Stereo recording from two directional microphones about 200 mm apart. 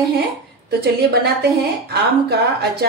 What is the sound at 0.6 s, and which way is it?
Speech, 55° right (ahead or behind).